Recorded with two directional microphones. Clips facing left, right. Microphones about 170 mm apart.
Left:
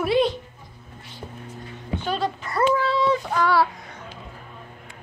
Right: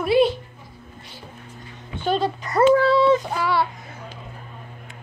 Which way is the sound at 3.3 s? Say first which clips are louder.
Left 2 dB; centre (ahead or behind).